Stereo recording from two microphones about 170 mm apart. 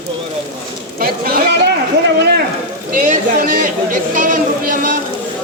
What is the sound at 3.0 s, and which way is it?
Speech, 50° right (ahead or behind).